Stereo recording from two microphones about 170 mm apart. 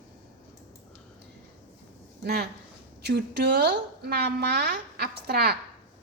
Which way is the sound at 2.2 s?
70° right (ahead or behind).